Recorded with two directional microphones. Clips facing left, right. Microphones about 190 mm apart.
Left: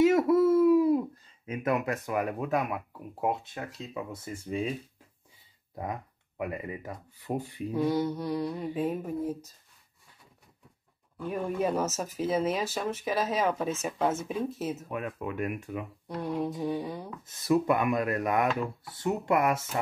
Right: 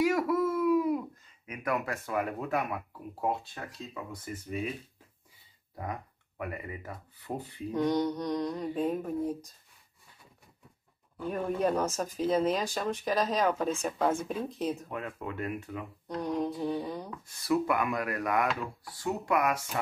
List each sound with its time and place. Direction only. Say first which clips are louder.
0.0 s speech: left 5 dB; 25° left (ahead or behind)
5.8 s speech: left 2 dB; 20° left (ahead or behind)
11.2 s speech: even; 5° left (ahead or behind)
14.9 s speech: left 3 dB; 15° left (ahead or behind)
17.2 s speech: left 3 dB; 20° left (ahead or behind)